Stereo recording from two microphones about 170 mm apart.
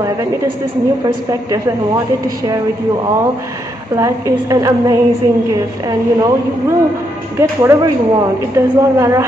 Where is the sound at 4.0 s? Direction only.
20° right (ahead or behind).